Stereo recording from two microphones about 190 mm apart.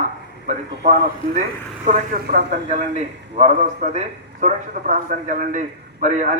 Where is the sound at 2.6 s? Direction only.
40° right (ahead or behind).